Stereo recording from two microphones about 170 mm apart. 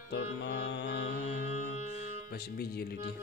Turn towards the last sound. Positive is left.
turn(degrees=70)  # may be behind; listen again after turning